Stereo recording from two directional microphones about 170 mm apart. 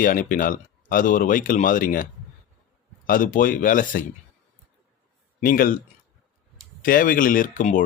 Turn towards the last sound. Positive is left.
turn(degrees=50)  # may be behind; listen again after turning